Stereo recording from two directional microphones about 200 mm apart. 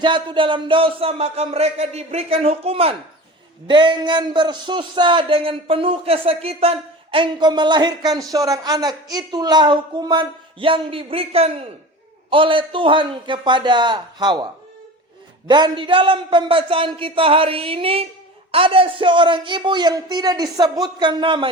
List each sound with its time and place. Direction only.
0.0 s a man's voice: 25° right (ahead or behind)
15.4 s a man's voice: 20° right (ahead or behind)